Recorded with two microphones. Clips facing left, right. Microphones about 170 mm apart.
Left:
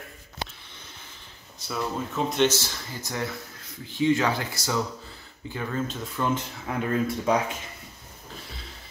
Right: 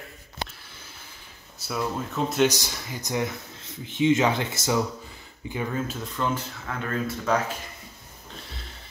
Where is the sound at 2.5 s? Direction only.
15° right (ahead or behind).